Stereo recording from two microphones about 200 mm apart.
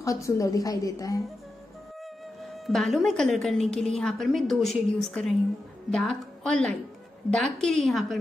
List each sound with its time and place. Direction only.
0.0 s a woman's voice: 15° left (ahead or behind)
2.4 s a woman's voice: centre (ahead or behind)